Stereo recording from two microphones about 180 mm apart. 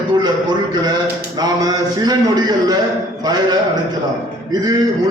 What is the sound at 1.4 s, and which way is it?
Speech, 20° right (ahead or behind).